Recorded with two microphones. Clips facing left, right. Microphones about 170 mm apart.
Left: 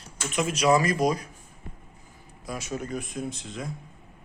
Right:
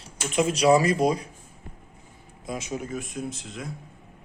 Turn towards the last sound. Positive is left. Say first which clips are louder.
# even
turn(degrees=0)  # may be behind; listen again after turning